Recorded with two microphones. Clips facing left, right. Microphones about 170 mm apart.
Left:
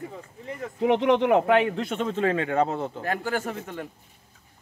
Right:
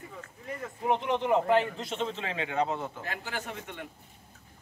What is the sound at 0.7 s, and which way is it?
A man's voice, 85° left.